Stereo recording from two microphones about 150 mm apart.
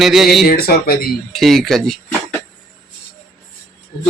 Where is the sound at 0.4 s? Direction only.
80° left.